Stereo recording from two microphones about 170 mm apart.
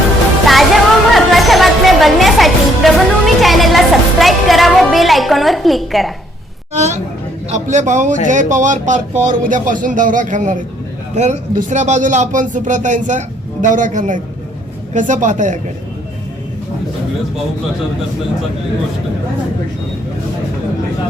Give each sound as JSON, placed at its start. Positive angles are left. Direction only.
{"t": 0.4, "sound": "music", "side_deg": 0}
{"t": 6.7, "sound": "a sound", "side_deg": -40}
{"t": 7.5, "sound": "speech", "side_deg": -45}